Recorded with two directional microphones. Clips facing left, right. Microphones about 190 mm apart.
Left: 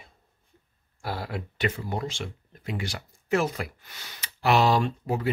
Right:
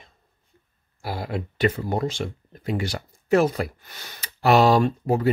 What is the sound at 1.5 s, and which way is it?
Speech, 40° right (ahead or behind).